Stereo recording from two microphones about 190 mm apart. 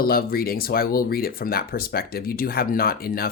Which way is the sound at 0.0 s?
50° left (ahead or behind).